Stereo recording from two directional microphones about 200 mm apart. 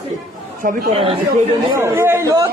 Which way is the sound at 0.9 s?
30° right (ahead or behind).